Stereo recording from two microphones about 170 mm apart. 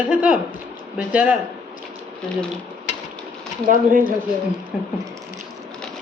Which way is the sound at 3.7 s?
50° right (ahead or behind).